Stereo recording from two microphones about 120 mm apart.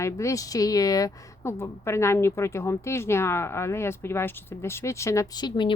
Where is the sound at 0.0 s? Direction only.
25° left (ahead or behind).